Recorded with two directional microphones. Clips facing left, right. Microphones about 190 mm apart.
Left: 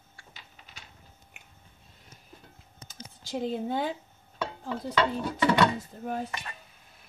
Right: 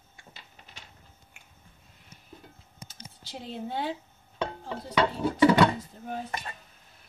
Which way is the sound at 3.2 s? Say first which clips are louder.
Left 7 dB; 45° left (ahead or behind).